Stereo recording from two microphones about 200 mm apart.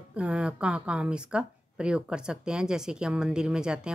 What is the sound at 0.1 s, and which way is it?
Speech, 5° right (ahead or behind).